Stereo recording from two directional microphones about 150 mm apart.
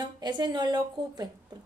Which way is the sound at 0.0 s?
30° right (ahead or behind).